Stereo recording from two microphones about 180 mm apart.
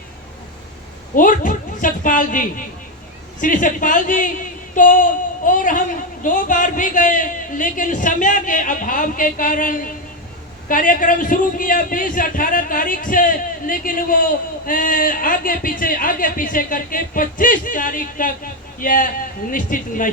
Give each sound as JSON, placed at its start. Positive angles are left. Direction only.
{"t": 1.1, "sound": "a man's voice", "side_deg": 50}
{"t": 4.7, "sound": "female singing", "side_deg": 45}
{"t": 5.5, "sound": "a man's voice", "side_deg": 45}